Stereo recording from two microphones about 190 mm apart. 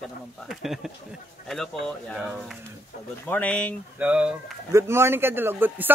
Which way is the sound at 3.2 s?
10° left (ahead or behind).